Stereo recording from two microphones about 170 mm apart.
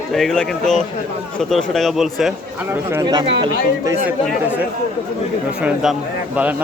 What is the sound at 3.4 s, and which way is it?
Speech, 20° right (ahead or behind).